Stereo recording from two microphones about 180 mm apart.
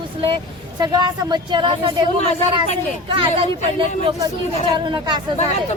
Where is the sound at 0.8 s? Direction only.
25° right (ahead or behind).